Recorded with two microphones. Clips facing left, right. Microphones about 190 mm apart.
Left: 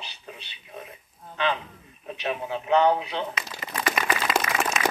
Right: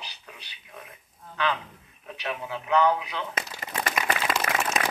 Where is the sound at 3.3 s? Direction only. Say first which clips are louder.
Even; 45° right (ahead or behind).